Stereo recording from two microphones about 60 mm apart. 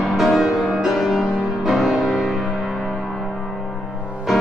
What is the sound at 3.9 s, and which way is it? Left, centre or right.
Music, centre.